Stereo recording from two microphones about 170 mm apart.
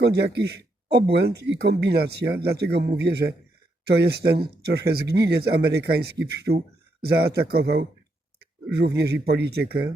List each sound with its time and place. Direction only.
0.0 s speech: 75° right (ahead or behind)